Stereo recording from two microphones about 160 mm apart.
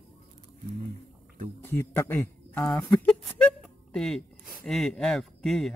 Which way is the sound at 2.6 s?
5° left (ahead or behind).